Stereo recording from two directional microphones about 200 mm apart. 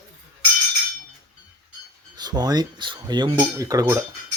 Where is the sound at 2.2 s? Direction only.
20° right (ahead or behind).